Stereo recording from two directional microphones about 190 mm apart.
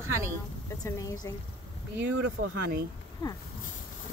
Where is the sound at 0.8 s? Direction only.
15° left (ahead or behind).